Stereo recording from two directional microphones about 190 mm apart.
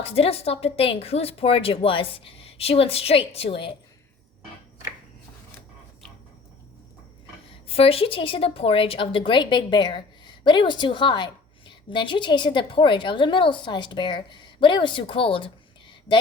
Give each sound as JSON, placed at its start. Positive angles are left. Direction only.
{"t": 0.0, "sound": "a woman's voice", "side_deg": 30}
{"t": 7.7, "sound": "a woman's voice", "side_deg": 30}